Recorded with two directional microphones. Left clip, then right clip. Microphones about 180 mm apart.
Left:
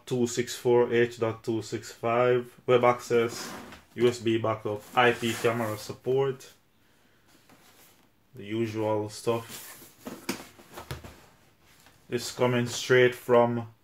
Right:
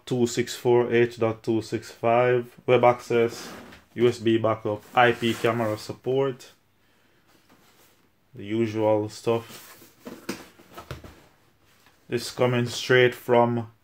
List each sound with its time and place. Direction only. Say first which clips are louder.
0.0 s speech: right 3 dB; 50° right (ahead or behind)
8.5 s speech: right 6 dB; 50° right (ahead or behind)
12.1 s speech: right 3 dB; 50° right (ahead or behind)